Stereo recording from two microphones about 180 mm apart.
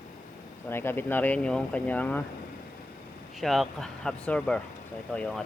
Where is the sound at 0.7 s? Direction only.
10° left (ahead or behind).